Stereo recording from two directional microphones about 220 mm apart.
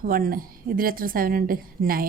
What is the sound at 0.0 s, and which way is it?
Speech, 40° right (ahead or behind).